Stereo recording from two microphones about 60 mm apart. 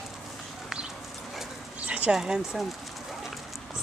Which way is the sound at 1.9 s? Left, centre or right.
Centre.